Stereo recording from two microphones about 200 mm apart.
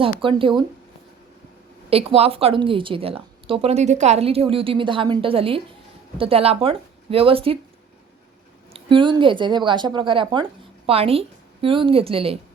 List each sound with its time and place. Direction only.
0.2 s a woman's voice: 25° right (ahead or behind)
1.9 s a woman's voice: 30° right (ahead or behind)
8.7 s a woman's voice: 25° right (ahead or behind)